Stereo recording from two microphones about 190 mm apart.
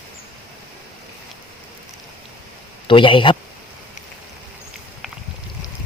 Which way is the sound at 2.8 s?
25° left (ahead or behind).